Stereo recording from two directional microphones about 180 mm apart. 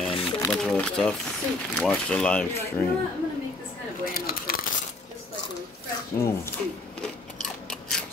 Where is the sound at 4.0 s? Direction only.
55° left (ahead or behind).